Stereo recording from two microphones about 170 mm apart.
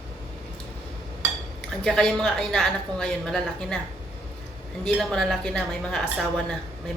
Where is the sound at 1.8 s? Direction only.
5° left (ahead or behind).